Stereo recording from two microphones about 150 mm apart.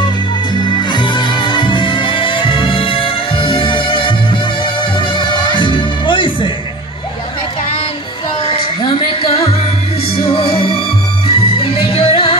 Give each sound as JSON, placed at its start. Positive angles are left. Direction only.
{"t": 0.7, "sound": "music", "side_deg": 30}
{"t": 8.5, "sound": "music", "side_deg": 35}